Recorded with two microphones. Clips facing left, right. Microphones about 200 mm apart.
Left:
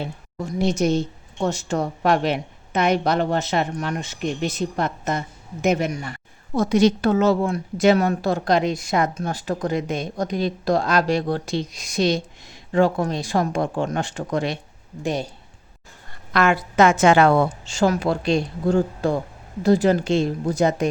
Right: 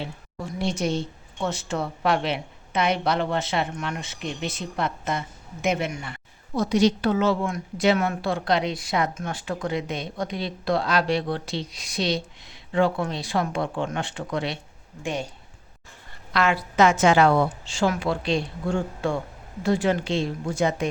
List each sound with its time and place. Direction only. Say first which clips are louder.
0.0 s a woman's voice: left 4 dB; 45° left (ahead or behind)
16.3 s a woman's voice: left 4 dB; 50° left (ahead or behind)